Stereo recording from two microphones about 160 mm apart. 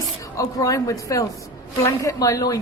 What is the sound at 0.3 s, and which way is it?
A woman's voice, 20° left (ahead or behind).